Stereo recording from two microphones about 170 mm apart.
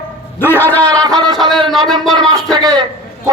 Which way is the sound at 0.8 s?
20° right (ahead or behind).